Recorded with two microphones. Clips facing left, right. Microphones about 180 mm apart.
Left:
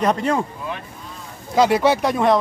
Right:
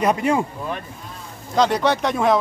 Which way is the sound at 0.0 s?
10° right (ahead or behind).